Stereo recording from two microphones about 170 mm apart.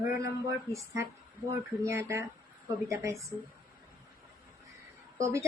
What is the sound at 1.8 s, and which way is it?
A woman's voice, 15° right (ahead or behind).